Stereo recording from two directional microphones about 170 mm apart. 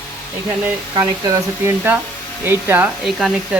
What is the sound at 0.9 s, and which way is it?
Speech, 20° right (ahead or behind).